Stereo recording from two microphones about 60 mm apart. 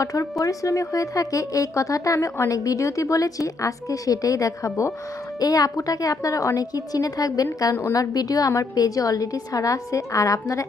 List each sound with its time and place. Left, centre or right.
0.0 s speech: left
5.4 s a woman's voice: left